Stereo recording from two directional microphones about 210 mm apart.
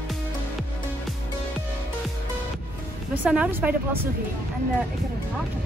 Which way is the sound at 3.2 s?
5° right (ahead or behind).